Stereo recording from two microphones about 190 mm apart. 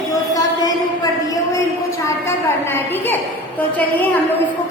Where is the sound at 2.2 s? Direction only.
10° left (ahead or behind).